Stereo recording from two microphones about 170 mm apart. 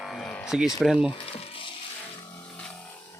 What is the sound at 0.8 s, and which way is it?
Speech, 5° right (ahead or behind).